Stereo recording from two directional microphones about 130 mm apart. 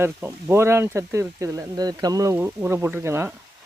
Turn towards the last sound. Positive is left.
turn(degrees=-20)  # may be behind; listen again after turning